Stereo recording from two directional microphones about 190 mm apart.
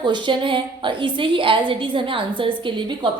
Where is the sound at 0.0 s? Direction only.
25° right (ahead or behind).